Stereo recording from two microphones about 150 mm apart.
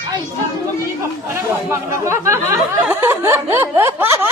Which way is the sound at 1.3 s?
15° right (ahead or behind).